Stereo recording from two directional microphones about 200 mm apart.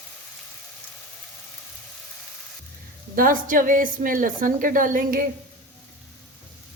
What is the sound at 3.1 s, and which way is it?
A woman's voice, 45° right (ahead or behind).